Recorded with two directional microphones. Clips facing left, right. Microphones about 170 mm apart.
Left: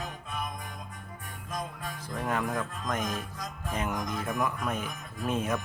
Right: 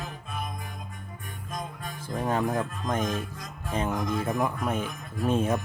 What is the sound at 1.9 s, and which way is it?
Speech, 25° right (ahead or behind).